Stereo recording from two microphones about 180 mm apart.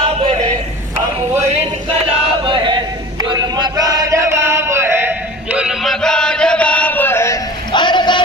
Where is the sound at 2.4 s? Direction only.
25° right (ahead or behind).